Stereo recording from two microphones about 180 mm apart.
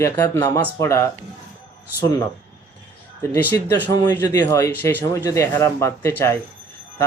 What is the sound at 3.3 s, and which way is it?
Speech, 15° left (ahead or behind).